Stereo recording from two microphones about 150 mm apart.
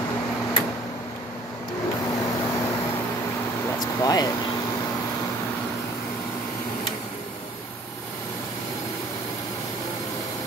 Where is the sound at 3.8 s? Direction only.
25° left (ahead or behind).